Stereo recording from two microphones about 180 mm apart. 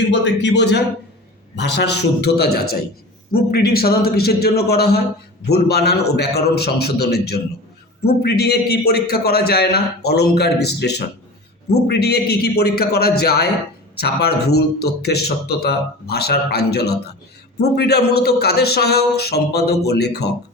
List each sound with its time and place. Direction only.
0.1 s a man's voice: 70° left (ahead or behind)